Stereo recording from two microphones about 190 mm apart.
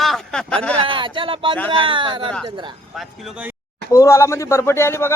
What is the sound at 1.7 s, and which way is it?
Speech, 25° right (ahead or behind).